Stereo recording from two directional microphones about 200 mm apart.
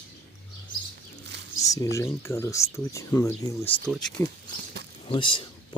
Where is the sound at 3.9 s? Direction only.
Centre (ahead or behind).